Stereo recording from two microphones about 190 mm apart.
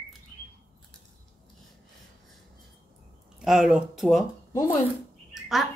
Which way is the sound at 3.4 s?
Centre (ahead or behind).